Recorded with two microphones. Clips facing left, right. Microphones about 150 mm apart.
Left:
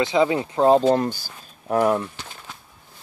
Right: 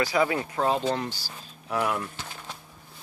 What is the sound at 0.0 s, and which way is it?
Speech, 20° left (ahead or behind).